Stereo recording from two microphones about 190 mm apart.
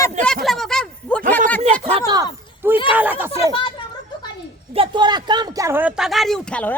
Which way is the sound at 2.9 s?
10° right (ahead or behind).